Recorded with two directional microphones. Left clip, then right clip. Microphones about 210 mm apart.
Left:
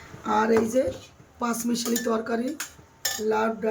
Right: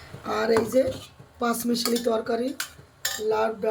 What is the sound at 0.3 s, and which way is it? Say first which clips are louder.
Speech: left 1 dB; 15° left (ahead or behind).